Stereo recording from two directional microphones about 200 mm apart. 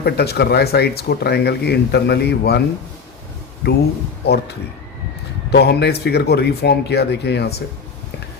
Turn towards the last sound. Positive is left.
turn(degrees=55)  # may be behind; listen again after turning